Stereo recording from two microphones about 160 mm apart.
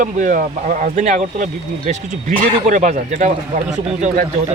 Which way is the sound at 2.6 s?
50° right (ahead or behind).